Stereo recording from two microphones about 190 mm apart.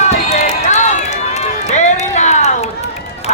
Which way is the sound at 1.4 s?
35° left (ahead or behind).